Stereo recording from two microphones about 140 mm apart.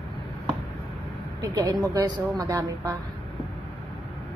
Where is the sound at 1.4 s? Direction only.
25° right (ahead or behind).